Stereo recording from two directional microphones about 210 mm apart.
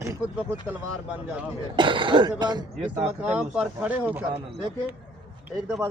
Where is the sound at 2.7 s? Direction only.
5° right (ahead or behind).